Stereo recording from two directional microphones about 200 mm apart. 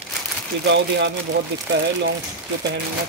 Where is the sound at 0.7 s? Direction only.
60° right (ahead or behind).